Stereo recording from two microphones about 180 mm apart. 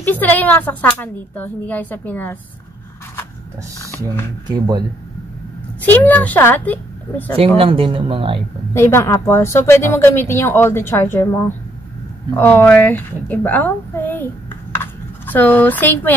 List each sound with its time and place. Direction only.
0.0 s a woman's voice: 10° left (ahead or behind)
3.8 s speech: 15° left (ahead or behind)
4.5 s speech: 25° right (ahead or behind)
5.9 s a woman's voice: 10° left (ahead or behind)
7.5 s speech: 30° right (ahead or behind)
8.7 s a woman's voice: 15° left (ahead or behind)
14.8 s a sound: 10° left (ahead or behind)